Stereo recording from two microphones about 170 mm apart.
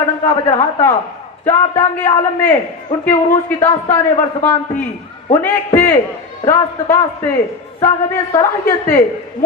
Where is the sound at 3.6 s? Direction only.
15° left (ahead or behind).